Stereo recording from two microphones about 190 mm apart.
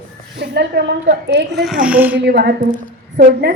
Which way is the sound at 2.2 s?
60° right (ahead or behind).